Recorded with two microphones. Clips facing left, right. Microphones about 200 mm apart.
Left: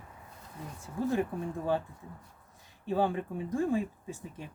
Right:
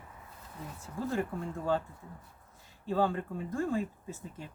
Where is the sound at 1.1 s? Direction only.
15° left (ahead or behind).